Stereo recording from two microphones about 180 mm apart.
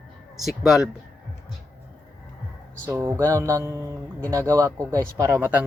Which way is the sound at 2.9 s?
15° right (ahead or behind).